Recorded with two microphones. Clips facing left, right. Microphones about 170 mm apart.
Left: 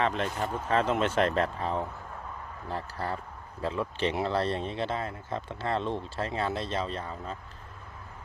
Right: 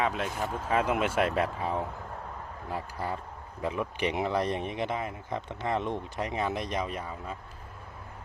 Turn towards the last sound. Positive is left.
turn(degrees=-10)  # may be behind; listen again after turning